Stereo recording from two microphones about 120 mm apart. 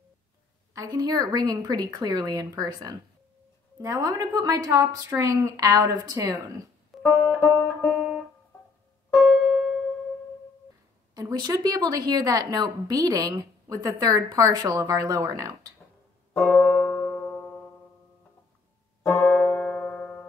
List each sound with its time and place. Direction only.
0.7 s a woman's voice: 35° right (ahead or behind)
6.9 s music: centre (ahead or behind)
11.1 s a woman's voice: 35° right (ahead or behind)
16.3 s music: 15° left (ahead or behind)
19.2 s music: centre (ahead or behind)